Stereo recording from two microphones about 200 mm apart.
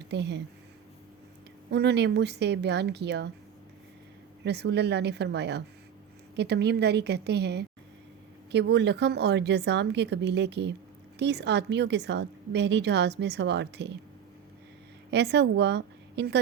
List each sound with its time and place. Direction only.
0.1 s a woman's voice: 60° right (ahead or behind)
1.7 s a woman's voice: 55° right (ahead or behind)
4.4 s a woman's voice: 55° right (ahead or behind)
15.1 s a woman's voice: 60° right (ahead or behind)